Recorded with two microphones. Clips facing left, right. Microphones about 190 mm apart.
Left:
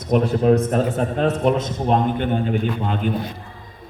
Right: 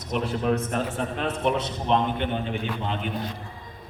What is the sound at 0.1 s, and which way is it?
A man's voice, 45° left (ahead or behind).